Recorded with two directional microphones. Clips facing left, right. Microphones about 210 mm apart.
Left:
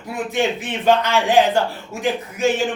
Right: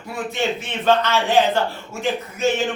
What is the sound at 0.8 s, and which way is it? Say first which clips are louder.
Speech: left 1 dB; 15° left (ahead or behind).